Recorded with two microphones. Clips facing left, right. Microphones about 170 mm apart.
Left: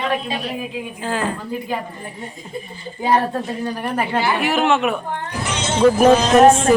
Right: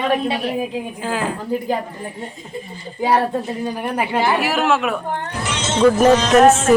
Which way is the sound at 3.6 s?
15° right (ahead or behind).